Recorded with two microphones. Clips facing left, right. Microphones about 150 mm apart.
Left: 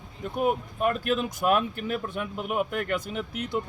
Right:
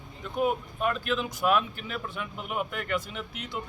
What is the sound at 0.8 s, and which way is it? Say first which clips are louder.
Speech: left 3 dB; 45° left (ahead or behind).